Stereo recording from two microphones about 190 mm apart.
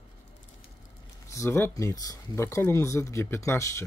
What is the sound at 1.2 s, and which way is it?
Speech, 15° left (ahead or behind).